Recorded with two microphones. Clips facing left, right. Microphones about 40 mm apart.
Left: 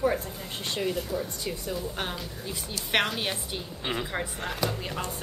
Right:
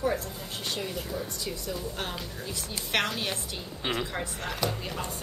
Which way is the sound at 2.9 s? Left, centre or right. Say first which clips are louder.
Left 2 dB; centre.